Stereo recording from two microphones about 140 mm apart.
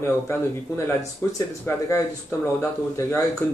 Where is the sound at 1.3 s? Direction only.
20° left (ahead or behind).